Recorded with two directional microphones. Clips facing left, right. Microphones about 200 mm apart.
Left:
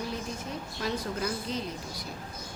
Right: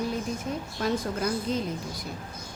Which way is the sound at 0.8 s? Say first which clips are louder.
Right 5 dB; 50° right (ahead or behind).